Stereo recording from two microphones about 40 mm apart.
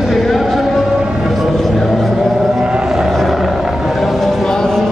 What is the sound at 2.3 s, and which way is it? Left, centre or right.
Vehicle, centre.